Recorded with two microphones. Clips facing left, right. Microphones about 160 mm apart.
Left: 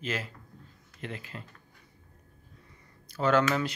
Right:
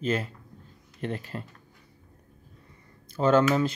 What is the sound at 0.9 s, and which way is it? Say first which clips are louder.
Speech: right 7 dB; 40° right (ahead or behind).